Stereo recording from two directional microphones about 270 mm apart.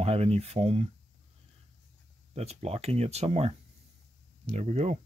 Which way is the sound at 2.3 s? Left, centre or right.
Right.